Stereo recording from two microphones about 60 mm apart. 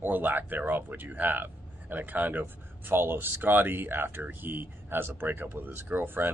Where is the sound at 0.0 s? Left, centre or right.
Right.